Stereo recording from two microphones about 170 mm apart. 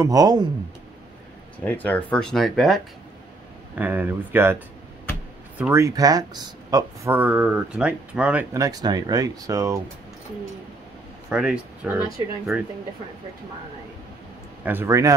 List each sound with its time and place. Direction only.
0.0 s speech: 20° right (ahead or behind)
1.6 s speech: 10° left (ahead or behind)
3.7 s speech: 10° right (ahead or behind)
5.6 s speech: 15° right (ahead or behind)
7.1 s speech: 10° right (ahead or behind)
8.5 s speech: 20° right (ahead or behind)
11.2 s speech: 5° right (ahead or behind)
14.6 s speech: 10° right (ahead or behind)